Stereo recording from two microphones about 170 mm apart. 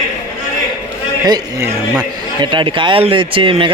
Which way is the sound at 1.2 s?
20° right (ahead or behind).